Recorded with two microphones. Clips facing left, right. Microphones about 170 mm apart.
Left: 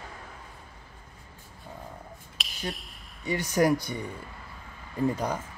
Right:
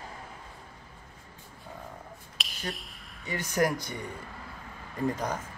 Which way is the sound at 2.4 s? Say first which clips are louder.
Left 2 dB; centre (ahead or behind).